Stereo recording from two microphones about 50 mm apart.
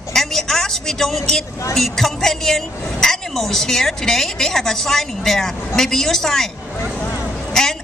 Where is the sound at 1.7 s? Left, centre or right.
Centre.